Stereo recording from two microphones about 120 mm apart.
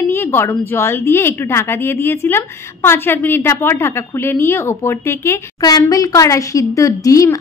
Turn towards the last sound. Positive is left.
turn(degrees=30)  # may be behind; listen again after turning